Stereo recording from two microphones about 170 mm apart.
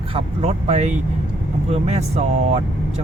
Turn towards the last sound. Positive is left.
turn(degrees=-40)  # may be behind; listen again after turning